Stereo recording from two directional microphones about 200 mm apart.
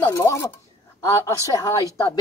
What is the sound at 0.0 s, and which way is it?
Speech, 15° left (ahead or behind).